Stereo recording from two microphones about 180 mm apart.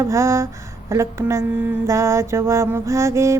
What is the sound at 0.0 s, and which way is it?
Mantra, 15° right (ahead or behind).